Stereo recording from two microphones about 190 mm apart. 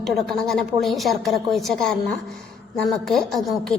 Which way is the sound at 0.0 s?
Centre (ahead or behind).